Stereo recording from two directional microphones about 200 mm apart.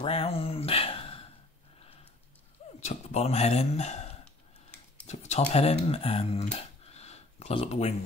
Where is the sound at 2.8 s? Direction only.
35° left (ahead or behind).